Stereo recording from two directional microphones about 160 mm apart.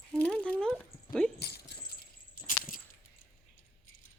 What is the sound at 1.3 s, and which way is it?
Keys jangling, 90° left.